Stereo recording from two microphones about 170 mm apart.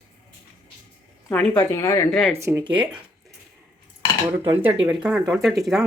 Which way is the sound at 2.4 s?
15° right (ahead or behind).